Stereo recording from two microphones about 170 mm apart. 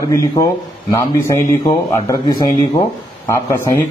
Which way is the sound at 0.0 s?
20° left (ahead or behind).